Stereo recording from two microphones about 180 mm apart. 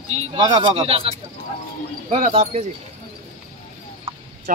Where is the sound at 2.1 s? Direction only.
45° right (ahead or behind).